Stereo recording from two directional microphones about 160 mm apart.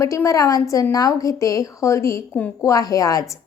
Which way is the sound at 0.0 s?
20° left (ahead or behind).